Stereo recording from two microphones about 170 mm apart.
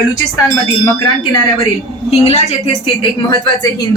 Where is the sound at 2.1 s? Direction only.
35° left (ahead or behind).